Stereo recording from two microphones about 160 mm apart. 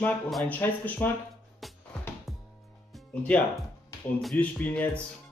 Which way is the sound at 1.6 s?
Centre (ahead or behind).